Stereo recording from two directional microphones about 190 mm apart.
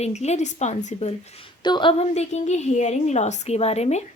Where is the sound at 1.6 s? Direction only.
25° left (ahead or behind).